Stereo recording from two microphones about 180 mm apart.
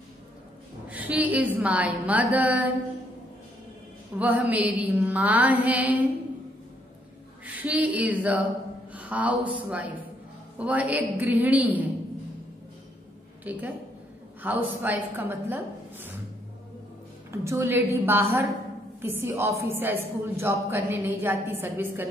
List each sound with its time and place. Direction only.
0.8 s a woman's voice: 10° right (ahead or behind)
4.2 s a woman's voice: 10° right (ahead or behind)
7.4 s a woman's voice: 10° right (ahead or behind)
13.4 s a woman's voice: 10° right (ahead or behind)
17.3 s a woman's voice: 15° right (ahead or behind)